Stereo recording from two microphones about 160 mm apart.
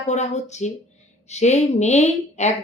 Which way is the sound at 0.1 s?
45° left (ahead or behind).